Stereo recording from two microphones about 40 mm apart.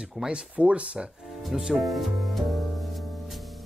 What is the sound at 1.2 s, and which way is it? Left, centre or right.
Music, centre.